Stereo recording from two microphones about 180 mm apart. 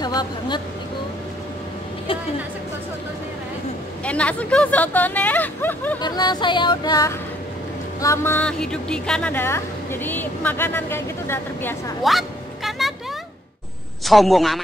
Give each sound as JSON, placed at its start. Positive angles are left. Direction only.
{"t": 0.0, "sound": "speech", "side_deg": 20}
{"t": 4.0, "sound": "speech", "side_deg": 5}
{"t": 5.9, "sound": "speech", "side_deg": 25}
{"t": 12.0, "sound": "vehicle", "side_deg": 0}
{"t": 14.0, "sound": "a man's voice", "side_deg": 0}